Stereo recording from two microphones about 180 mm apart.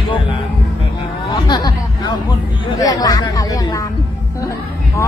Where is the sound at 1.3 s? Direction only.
20° left (ahead or behind).